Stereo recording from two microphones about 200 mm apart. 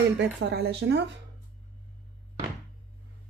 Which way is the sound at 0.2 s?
55° right (ahead or behind).